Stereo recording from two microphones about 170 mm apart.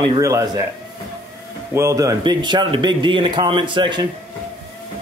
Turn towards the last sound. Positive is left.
turn(degrees=-30)  # may be behind; listen again after turning